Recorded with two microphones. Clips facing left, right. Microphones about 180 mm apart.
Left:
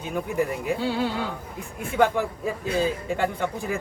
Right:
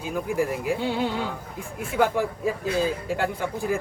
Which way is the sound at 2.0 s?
5° right (ahead or behind).